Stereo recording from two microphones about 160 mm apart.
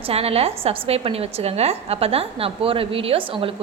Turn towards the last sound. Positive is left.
turn(degrees=-35)  # may be behind; listen again after turning